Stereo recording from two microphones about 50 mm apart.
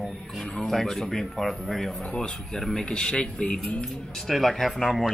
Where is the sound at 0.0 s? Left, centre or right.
Centre.